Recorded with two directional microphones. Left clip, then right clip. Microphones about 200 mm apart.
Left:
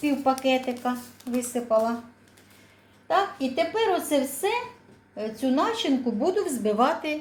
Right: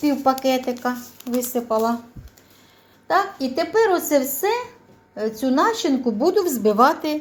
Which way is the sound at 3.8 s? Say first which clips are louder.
Right 5 dB; 35° right (ahead or behind).